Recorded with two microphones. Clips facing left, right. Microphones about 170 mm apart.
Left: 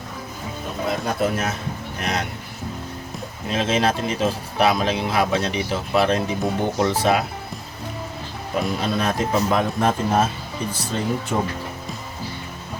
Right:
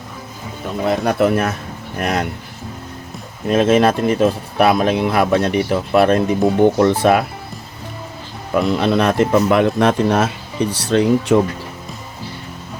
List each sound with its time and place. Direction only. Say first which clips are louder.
0.9 s a man's voice: right 7 dB; 65° right (ahead or behind)
2.0 s speech: right 7 dB; 50° right (ahead or behind)
3.5 s speech: right 8 dB; 55° right (ahead or behind)
8.5 s a man's voice: right 8 dB; 70° right (ahead or behind); by 11.3 s 85° right